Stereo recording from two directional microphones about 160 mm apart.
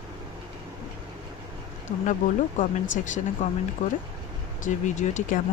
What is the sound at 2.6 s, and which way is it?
Speech, 50° left (ahead or behind).